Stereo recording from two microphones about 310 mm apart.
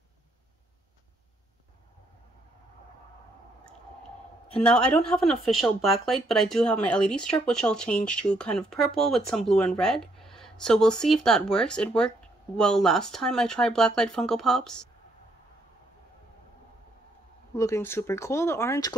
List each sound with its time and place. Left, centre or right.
4.6 s speech: centre
17.6 s speech: centre